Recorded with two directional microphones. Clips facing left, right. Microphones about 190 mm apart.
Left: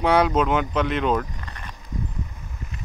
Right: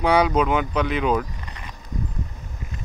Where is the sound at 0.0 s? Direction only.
Centre (ahead or behind).